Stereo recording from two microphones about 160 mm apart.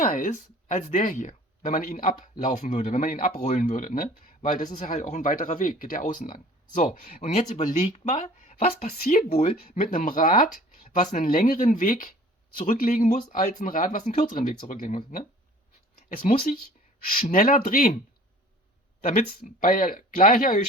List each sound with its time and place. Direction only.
0.0 s speech: 55° left (ahead or behind)
19.4 s speech: 60° left (ahead or behind)